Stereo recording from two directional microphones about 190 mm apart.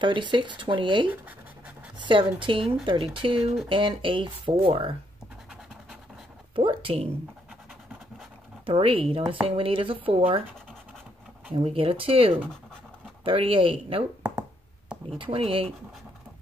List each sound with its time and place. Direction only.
0.0 s speech: 25° right (ahead or behind)
2.0 s a sound: 25° right (ahead or behind)
2.4 s speech: 25° right (ahead or behind)
6.5 s speech: 25° right (ahead or behind)
8.6 s speech: 30° right (ahead or behind)
11.5 s speech: 30° right (ahead or behind)
15.0 s speech: 30° right (ahead or behind)